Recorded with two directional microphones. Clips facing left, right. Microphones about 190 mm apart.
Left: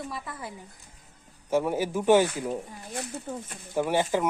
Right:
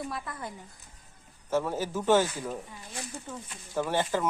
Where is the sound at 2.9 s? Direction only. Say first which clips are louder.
Left 6 dB; 60° left (ahead or behind).